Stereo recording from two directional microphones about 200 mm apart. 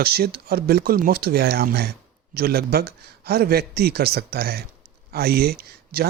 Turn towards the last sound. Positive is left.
turn(degrees=-50)  # may be behind; listen again after turning